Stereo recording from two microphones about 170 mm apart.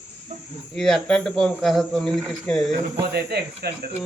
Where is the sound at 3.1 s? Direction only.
70° right (ahead or behind).